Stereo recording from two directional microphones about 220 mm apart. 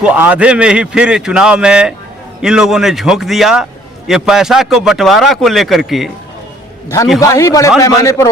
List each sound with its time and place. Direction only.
0.0 s a man's voice: 5° right (ahead or behind)
7.2 s a man's voice: 15° left (ahead or behind)